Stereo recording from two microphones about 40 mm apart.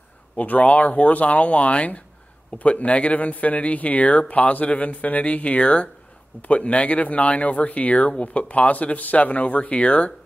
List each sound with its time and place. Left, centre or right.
0.4 s speech: left
5.6 s speech: left